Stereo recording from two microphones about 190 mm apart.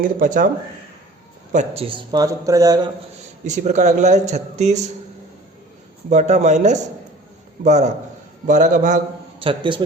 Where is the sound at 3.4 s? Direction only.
40° right (ahead or behind).